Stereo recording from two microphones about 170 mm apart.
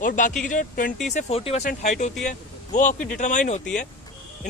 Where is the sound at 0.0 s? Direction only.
50° left (ahead or behind).